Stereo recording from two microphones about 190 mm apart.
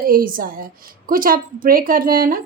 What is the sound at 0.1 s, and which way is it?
A woman's voice, 50° right (ahead or behind).